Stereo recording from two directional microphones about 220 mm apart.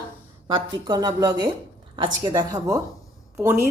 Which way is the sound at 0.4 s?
20° right (ahead or behind).